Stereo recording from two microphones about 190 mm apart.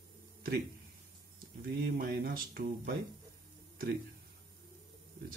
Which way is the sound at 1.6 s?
50° right (ahead or behind).